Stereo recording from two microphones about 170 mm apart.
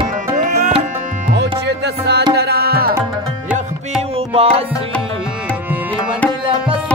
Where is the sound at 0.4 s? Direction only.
45° right (ahead or behind).